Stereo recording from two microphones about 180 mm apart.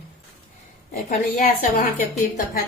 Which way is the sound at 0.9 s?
50° left (ahead or behind).